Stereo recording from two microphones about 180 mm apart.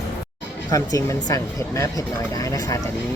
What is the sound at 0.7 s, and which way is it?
Speech, 20° left (ahead or behind).